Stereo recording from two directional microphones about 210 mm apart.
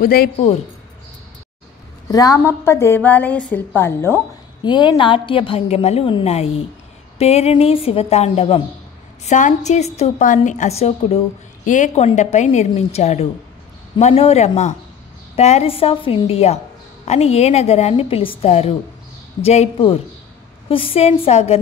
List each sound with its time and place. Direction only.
0.0 s speech: 45° left (ahead or behind)
2.0 s a woman's voice: 15° left (ahead or behind)
4.6 s a woman's voice: 20° left (ahead or behind)